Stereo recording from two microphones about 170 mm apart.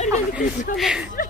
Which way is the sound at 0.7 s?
5° right (ahead or behind).